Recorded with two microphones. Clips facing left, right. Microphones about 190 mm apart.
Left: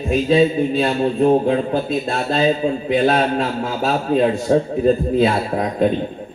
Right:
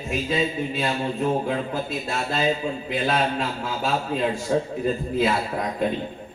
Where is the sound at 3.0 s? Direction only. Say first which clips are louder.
Left 3 dB; 50° left (ahead or behind).